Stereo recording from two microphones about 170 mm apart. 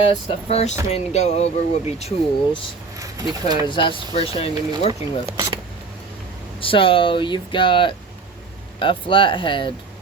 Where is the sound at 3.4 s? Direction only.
25° right (ahead or behind).